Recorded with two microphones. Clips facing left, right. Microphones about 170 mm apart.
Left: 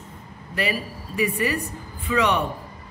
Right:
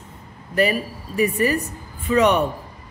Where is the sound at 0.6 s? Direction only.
45° right (ahead or behind).